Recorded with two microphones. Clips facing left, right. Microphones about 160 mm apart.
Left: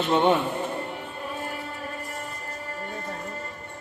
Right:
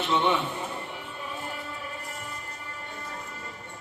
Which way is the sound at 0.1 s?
50° left (ahead or behind).